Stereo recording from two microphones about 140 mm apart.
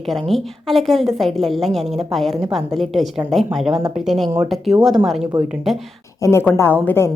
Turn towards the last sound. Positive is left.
turn(degrees=20)  # may be behind; listen again after turning